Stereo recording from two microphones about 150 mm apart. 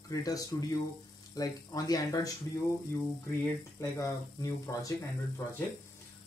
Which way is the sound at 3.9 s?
20° left (ahead or behind).